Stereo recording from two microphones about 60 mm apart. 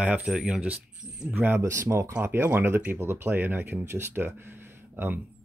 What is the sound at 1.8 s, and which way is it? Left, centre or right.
Speech, right.